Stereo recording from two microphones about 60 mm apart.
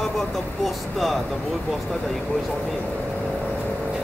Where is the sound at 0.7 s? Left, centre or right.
Centre.